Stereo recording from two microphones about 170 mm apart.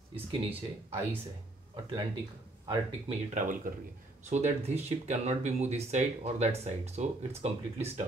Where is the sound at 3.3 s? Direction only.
50° right (ahead or behind).